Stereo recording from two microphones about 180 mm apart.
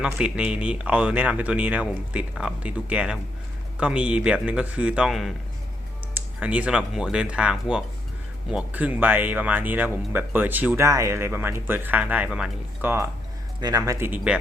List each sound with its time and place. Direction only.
0.0 s speech: 5° right (ahead or behind)